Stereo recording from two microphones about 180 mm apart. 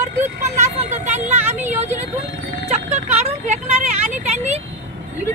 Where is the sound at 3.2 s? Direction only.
40° right (ahead or behind).